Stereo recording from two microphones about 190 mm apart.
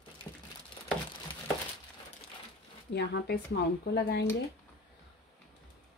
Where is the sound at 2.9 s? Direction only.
60° left (ahead or behind).